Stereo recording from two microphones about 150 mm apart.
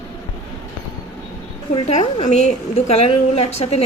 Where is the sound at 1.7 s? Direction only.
45° left (ahead or behind).